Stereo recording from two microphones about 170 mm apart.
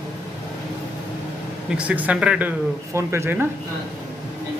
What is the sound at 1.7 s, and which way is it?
Speech, 10° right (ahead or behind).